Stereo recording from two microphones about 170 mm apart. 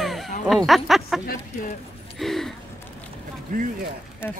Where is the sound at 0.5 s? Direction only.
Centre (ahead or behind).